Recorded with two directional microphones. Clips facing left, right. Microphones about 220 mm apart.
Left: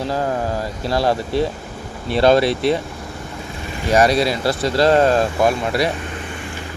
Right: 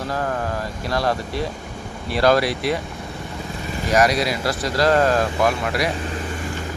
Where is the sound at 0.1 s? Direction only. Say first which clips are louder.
Left 2 dB; 25° left (ahead or behind).